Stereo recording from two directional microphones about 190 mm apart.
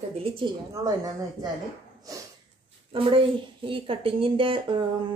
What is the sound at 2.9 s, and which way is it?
Speech, 30° right (ahead or behind).